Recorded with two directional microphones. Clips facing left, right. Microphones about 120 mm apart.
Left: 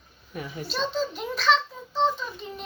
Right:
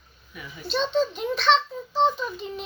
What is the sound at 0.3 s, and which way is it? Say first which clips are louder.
Speech: left 6 dB; 45° left (ahead or behind).